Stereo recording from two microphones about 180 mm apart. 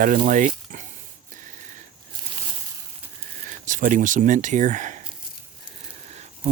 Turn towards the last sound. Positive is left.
turn(degrees=-40)  # may be behind; listen again after turning